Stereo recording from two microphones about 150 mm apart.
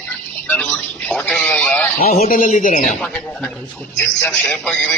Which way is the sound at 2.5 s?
60° left (ahead or behind).